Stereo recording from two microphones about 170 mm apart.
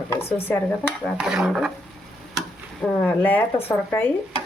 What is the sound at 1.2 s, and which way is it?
Dishes, 5° right (ahead or behind).